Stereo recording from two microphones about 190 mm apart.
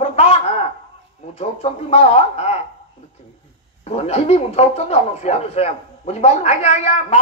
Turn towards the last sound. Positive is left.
turn(degrees=35)  # may be behind; listen again after turning